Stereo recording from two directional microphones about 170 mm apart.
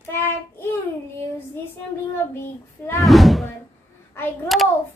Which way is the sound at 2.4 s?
15° left (ahead or behind).